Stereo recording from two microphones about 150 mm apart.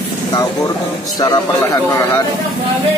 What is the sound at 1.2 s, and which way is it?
Speech, 25° left (ahead or behind).